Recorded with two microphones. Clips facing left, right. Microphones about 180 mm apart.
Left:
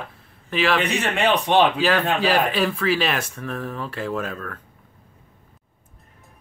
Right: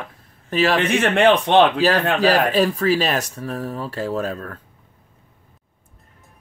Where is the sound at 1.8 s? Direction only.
40° right (ahead or behind).